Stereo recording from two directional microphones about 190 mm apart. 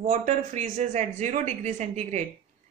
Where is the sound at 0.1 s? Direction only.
40° right (ahead or behind).